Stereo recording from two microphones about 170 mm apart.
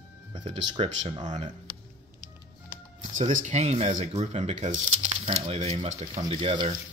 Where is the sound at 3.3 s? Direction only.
45° right (ahead or behind).